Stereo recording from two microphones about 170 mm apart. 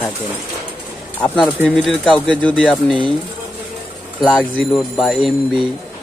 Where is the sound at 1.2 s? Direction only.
5° left (ahead or behind).